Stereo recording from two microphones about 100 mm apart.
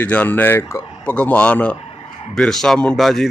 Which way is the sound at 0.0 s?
15° left (ahead or behind).